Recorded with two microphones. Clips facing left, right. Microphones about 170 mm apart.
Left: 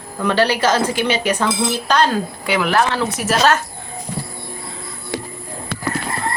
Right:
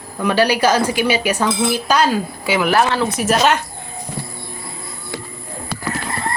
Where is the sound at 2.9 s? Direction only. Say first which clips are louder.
Right 2 dB; 20° right (ahead or behind).